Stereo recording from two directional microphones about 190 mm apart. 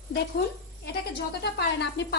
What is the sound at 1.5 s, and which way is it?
Speech, 60° left (ahead or behind).